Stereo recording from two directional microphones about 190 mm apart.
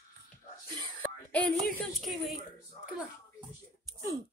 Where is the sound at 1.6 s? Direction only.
Centre (ahead or behind).